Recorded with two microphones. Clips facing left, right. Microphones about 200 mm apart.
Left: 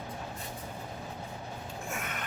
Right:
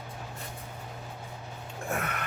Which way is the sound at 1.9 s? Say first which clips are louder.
Right 7 dB; 65° right (ahead or behind).